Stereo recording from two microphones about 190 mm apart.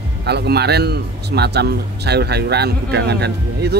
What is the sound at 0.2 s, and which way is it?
Speech, 60° right (ahead or behind).